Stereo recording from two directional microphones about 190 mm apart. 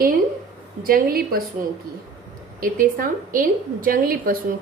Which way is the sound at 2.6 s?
45° right (ahead or behind).